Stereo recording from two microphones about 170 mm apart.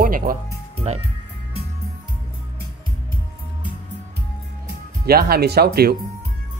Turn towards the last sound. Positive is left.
turn(degrees=-65)  # may be behind; listen again after turning